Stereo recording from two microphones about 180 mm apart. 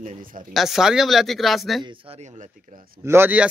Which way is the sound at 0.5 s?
Centre (ahead or behind).